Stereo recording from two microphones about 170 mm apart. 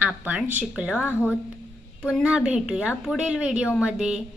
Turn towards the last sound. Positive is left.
turn(degrees=-5)  # may be behind; listen again after turning